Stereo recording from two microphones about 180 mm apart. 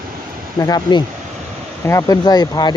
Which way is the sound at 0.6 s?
20° left (ahead or behind).